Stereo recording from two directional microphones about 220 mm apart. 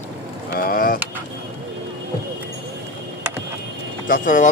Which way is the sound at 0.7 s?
40° left (ahead or behind).